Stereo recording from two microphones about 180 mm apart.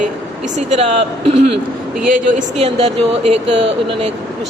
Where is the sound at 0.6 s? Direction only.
40° right (ahead or behind).